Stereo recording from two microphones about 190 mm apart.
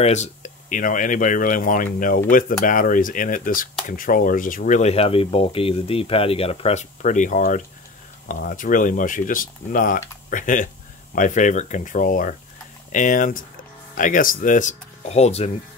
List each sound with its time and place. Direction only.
0.0 s speech: 35° left (ahead or behind)